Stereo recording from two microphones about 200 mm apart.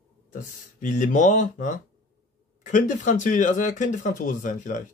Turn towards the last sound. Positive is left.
turn(degrees=40)  # may be behind; listen again after turning